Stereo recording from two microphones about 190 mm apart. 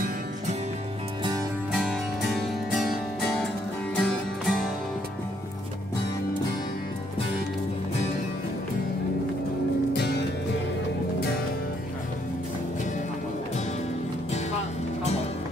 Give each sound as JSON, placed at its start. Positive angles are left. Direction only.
{"t": 1.7, "sound": "music", "side_deg": 0}
{"t": 9.9, "sound": "music", "side_deg": 60}